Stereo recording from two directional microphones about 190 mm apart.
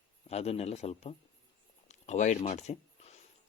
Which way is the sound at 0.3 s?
35° left (ahead or behind).